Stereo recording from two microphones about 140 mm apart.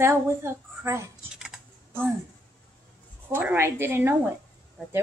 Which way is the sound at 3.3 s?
15° right (ahead or behind).